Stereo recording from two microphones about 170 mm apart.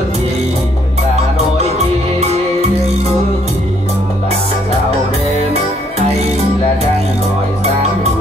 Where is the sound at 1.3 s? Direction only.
40° right (ahead or behind).